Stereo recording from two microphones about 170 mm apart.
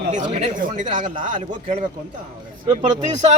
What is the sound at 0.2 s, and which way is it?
Speech, 35° right (ahead or behind).